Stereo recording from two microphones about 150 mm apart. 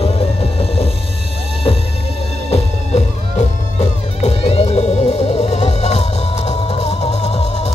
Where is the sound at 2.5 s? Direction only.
45° left (ahead or behind).